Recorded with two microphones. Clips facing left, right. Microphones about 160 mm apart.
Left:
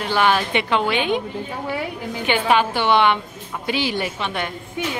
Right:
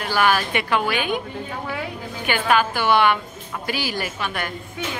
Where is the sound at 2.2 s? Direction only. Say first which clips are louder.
Left 2 dB; 25° left (ahead or behind).